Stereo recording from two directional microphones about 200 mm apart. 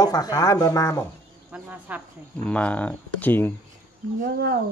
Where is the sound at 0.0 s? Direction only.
20° left (ahead or behind).